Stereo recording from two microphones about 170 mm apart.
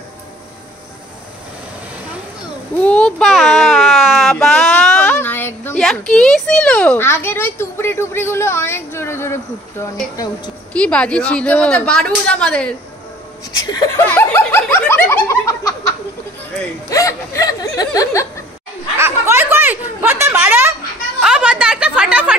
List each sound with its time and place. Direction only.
2.8 s child singing: 5° left (ahead or behind)
10.7 s speech: 5° left (ahead or behind)
13.7 s speech: 25° left (ahead or behind)
14.0 s snicker: 10° left (ahead or behind)
16.9 s speech: 20° left (ahead or behind)
18.9 s a sound: 15° right (ahead or behind)